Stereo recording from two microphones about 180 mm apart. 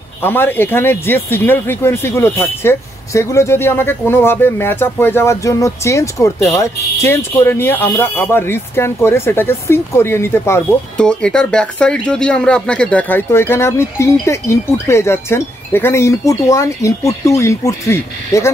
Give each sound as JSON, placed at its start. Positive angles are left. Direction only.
{"t": 0.2, "sound": "speech", "side_deg": 10}